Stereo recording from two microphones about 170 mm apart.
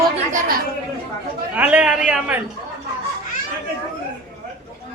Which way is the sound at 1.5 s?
10° right (ahead or behind).